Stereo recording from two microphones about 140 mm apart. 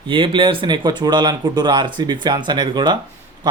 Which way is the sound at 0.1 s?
35° right (ahead or behind).